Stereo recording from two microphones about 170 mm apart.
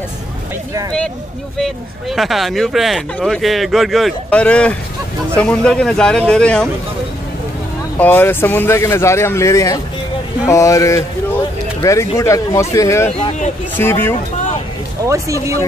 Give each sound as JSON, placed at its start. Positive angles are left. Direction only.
{"t": 1.6, "sound": "speech", "side_deg": 0}
{"t": 8.0, "sound": "speech", "side_deg": 10}
{"t": 15.0, "sound": "speech", "side_deg": -20}